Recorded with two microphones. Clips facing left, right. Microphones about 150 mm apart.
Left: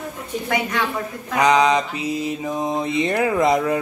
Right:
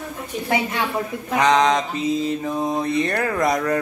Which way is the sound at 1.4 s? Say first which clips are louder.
Left 1 dB; 10° left (ahead or behind).